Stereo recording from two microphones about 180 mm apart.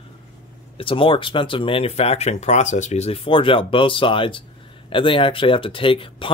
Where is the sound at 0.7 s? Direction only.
30° left (ahead or behind).